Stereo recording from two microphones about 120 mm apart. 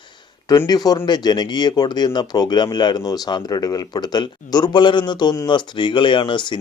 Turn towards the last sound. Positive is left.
turn(degrees=40)  # may be behind; listen again after turning